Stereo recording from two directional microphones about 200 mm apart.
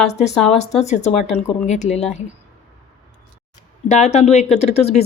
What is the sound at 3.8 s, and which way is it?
Speech, 35° left (ahead or behind).